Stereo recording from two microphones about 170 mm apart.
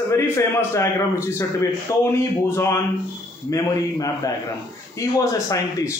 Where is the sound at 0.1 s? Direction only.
15° left (ahead or behind).